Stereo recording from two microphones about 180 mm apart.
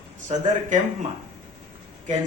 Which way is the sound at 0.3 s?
40° right (ahead or behind).